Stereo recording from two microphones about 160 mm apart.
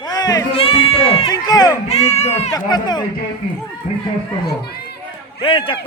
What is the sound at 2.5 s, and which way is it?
Speech, 25° left (ahead or behind).